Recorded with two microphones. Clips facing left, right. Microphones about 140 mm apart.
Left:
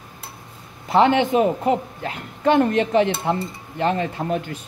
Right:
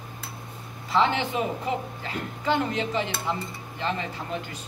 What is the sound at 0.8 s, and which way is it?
A woman's voice, 55° left (ahead or behind).